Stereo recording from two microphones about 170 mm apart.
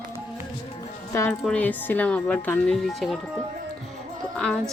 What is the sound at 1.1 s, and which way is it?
A woman's voice, 15° left (ahead or behind).